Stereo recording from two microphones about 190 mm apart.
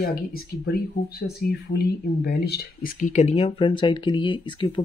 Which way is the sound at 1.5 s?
55° left (ahead or behind).